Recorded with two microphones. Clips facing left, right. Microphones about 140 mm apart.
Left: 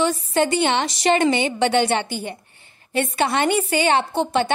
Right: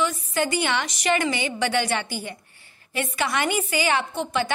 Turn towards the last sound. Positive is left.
turn(degrees=30)  # may be behind; listen again after turning